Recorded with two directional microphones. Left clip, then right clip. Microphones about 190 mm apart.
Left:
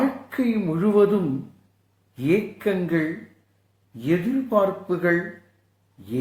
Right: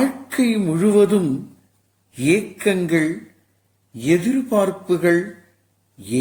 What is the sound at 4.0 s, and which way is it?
A woman's voice, 45° right (ahead or behind).